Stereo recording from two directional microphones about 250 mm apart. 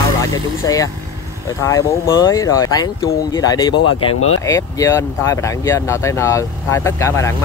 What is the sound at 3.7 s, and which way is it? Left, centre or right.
Speech, left.